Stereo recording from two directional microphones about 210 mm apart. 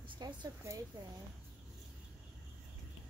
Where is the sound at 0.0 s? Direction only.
20° right (ahead or behind).